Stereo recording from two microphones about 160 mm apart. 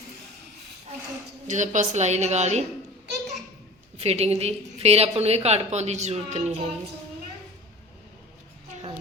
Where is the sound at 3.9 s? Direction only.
40° right (ahead or behind).